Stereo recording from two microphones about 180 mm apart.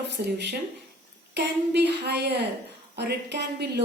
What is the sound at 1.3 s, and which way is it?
Speech, 70° right (ahead or behind).